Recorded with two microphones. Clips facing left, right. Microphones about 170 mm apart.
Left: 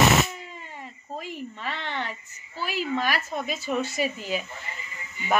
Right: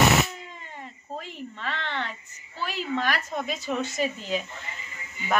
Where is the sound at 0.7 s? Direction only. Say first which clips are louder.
Even; 10° left (ahead or behind).